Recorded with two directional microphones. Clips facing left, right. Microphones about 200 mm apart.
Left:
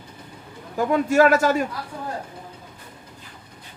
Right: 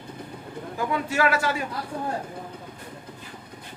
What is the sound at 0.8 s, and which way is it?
Speech, 45° left (ahead or behind).